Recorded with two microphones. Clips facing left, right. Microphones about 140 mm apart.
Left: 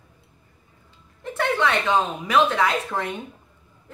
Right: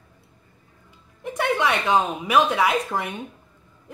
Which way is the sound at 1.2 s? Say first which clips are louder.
Even; 15° right (ahead or behind).